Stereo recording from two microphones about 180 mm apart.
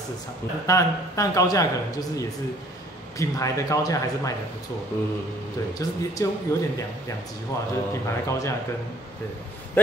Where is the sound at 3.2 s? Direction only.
15° left (ahead or behind).